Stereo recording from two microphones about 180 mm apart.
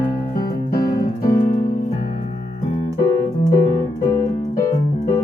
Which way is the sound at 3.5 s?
15° left (ahead or behind).